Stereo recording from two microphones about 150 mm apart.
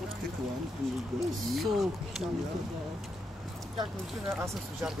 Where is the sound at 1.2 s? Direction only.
Centre (ahead or behind).